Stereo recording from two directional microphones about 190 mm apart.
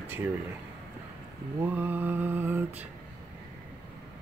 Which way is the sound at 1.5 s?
10° right (ahead or behind).